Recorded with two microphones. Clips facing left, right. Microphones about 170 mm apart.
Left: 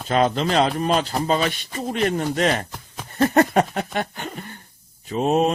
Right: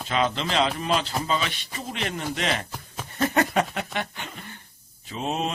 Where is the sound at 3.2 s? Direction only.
45° left (ahead or behind).